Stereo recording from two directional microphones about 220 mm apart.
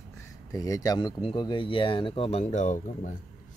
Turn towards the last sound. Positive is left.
turn(degrees=35)  # may be behind; listen again after turning